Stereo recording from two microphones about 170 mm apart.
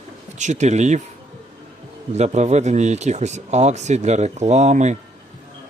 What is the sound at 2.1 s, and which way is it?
Speech, 40° right (ahead or behind).